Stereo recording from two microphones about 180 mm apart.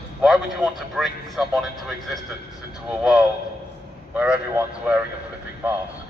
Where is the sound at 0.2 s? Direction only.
Centre (ahead or behind).